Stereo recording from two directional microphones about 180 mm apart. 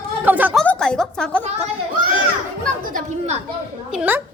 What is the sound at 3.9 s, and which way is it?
Speech, 10° right (ahead or behind).